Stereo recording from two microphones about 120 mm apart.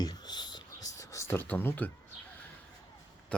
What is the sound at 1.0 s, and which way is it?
Speech, 25° left (ahead or behind).